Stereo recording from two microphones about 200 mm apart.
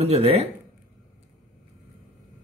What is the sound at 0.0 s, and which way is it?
Speech, 30° right (ahead or behind).